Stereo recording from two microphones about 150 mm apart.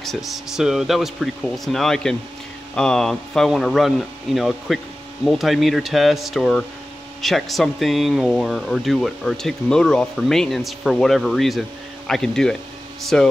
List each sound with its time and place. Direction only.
0.0 s speech: centre (ahead or behind)